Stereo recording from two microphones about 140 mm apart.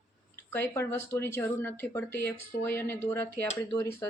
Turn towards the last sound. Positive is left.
turn(degrees=20)  # may be behind; listen again after turning